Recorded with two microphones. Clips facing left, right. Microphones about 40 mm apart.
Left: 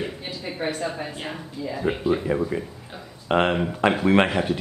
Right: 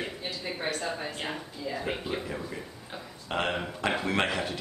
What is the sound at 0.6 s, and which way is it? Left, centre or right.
Speech, left.